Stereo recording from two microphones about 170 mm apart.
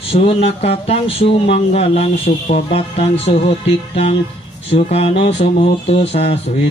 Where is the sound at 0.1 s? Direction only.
35° left (ahead or behind).